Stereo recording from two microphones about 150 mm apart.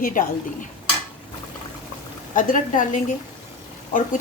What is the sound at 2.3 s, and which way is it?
Speech, 60° left (ahead or behind).